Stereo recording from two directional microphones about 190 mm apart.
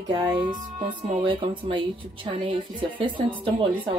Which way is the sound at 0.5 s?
45° right (ahead or behind).